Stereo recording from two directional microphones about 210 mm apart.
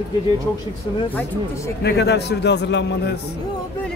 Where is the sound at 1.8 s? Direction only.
50° left (ahead or behind).